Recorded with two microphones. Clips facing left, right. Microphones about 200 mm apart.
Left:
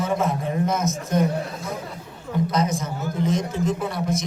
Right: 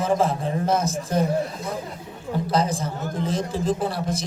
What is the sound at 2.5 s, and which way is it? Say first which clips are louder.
A man's voice: right 1 dB; 30° right (ahead or behind).